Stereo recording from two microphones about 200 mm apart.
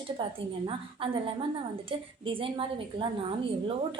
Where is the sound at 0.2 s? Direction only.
25° right (ahead or behind).